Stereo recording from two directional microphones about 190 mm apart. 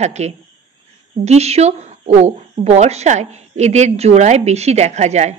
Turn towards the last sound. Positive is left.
turn(degrees=-35)  # may be behind; listen again after turning